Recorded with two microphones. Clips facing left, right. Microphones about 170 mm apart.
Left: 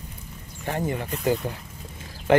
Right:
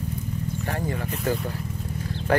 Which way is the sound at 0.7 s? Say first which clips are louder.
Left 4 dB; 20° left (ahead or behind).